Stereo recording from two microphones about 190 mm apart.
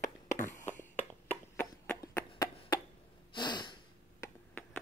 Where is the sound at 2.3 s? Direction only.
20° left (ahead or behind).